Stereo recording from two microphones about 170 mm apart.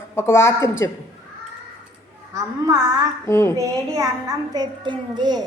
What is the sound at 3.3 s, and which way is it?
Speech, 15° left (ahead or behind).